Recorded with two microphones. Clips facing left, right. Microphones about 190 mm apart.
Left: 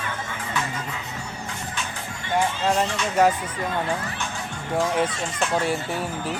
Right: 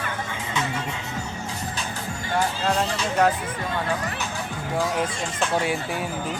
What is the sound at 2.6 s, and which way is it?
Speech, centre (ahead or behind).